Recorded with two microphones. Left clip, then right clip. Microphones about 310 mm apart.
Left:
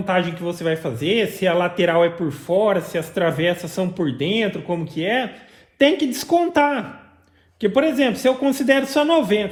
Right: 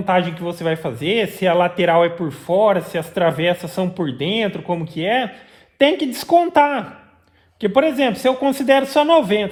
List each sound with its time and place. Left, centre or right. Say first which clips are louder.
0.0 s speech: right 3 dB; right